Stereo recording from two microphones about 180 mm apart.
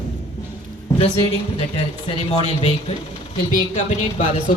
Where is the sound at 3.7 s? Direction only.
40° left (ahead or behind).